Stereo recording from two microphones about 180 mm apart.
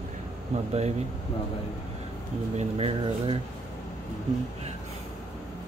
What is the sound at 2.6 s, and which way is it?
Speech, 30° right (ahead or behind).